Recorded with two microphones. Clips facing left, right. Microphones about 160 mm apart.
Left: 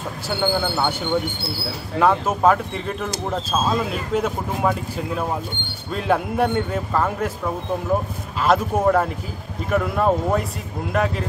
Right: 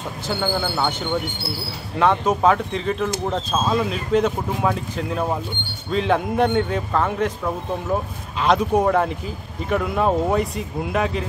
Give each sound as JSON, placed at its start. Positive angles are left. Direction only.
{"t": 0.4, "sound": "speech", "side_deg": 5}
{"t": 2.0, "sound": "a man's voice", "side_deg": 5}
{"t": 8.5, "sound": "a man's voice", "side_deg": 0}